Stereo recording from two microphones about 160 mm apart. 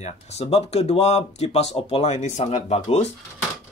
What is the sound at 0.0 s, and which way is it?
Speech, 45° left (ahead or behind).